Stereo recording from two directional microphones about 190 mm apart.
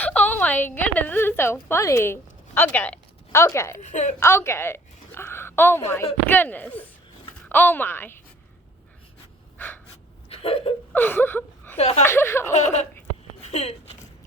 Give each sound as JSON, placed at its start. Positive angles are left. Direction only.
{"t": 0.0, "sound": "fowl", "side_deg": 10}
{"t": 1.6, "sound": "speech", "side_deg": 15}
{"t": 3.8, "sound": "speech", "side_deg": 40}
{"t": 4.2, "sound": "a woman's voice", "side_deg": 15}
{"t": 9.6, "sound": "gasp", "side_deg": 10}
{"t": 10.2, "sound": "a sound", "side_deg": 30}
{"t": 10.9, "sound": "speech", "side_deg": 10}
{"t": 11.8, "sound": "speech", "side_deg": 35}
{"t": 12.0, "sound": "speech", "side_deg": 15}
{"t": 12.5, "sound": "speech", "side_deg": 35}
{"t": 13.5, "sound": "a sound", "side_deg": 35}